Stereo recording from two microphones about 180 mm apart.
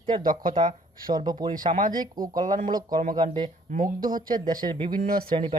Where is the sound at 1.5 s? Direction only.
50° right (ahead or behind).